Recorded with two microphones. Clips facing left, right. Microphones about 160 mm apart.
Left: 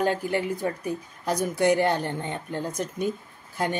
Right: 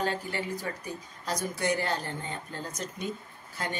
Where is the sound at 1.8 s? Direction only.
65° left (ahead or behind).